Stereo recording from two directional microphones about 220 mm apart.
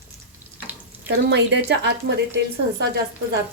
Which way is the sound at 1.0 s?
50° right (ahead or behind).